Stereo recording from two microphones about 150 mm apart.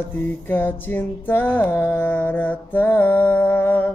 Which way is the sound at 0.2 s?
10° left (ahead or behind).